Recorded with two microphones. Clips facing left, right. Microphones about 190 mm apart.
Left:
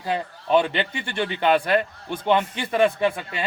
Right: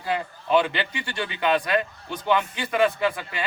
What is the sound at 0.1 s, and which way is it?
Speech, 25° left (ahead or behind).